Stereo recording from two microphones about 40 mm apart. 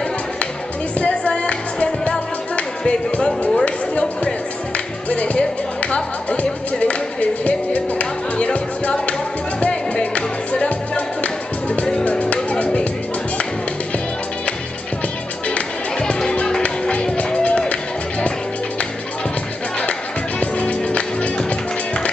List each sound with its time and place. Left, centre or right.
1.0 s music: left
3.2 s speech: centre
3.6 s music: left
16.0 s music: centre
19.8 s music: left